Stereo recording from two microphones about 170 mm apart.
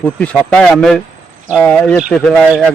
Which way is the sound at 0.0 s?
5° left (ahead or behind).